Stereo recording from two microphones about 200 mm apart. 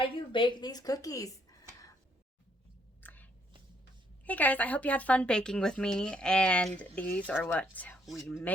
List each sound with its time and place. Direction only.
0.0 s a woman's voice: 25° left (ahead or behind)
3.0 s biting: 10° left (ahead or behind)
4.3 s speech: 10° left (ahead or behind)